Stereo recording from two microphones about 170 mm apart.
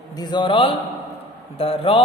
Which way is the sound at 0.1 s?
25° left (ahead or behind).